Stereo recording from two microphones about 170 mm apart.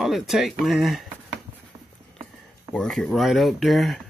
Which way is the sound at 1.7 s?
35° right (ahead or behind).